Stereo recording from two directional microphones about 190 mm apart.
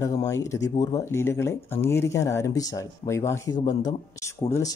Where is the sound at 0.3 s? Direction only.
15° left (ahead or behind).